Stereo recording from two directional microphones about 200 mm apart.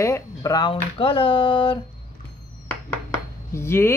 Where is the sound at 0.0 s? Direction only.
15° left (ahead or behind).